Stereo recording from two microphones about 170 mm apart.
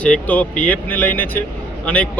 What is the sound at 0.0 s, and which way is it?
Speech, 10° left (ahead or behind).